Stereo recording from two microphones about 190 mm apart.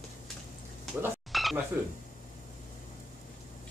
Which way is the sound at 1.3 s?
Centre (ahead or behind).